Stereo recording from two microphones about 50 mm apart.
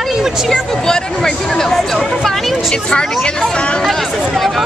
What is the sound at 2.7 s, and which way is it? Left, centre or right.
Speech, centre.